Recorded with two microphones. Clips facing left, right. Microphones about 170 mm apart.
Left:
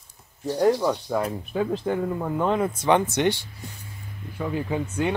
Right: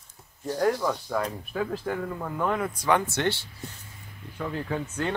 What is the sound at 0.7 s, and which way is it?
Speech, 15° left (ahead or behind).